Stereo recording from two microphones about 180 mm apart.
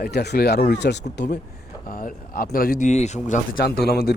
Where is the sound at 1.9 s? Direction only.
55° left (ahead or behind).